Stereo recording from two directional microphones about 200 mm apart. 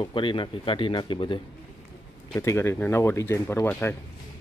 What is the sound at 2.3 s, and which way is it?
Speech, 15° left (ahead or behind).